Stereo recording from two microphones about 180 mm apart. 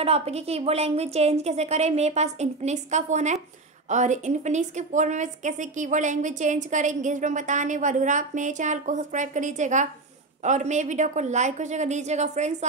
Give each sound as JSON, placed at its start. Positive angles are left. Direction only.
{"t": 0.0, "sound": "a woman's voice", "side_deg": -35}